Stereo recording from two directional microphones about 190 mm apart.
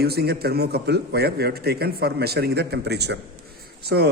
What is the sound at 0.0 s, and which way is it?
A man's voice, 55° right (ahead or behind).